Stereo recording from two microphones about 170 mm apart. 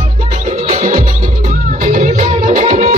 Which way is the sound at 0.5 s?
45° right (ahead or behind).